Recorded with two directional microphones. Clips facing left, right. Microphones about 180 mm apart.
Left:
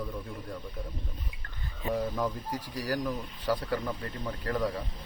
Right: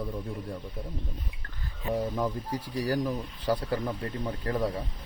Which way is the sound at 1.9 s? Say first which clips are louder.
Right 1 dB; 20° right (ahead or behind).